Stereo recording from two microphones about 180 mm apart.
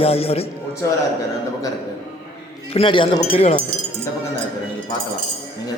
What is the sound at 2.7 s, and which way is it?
Speech, 30° left (ahead or behind).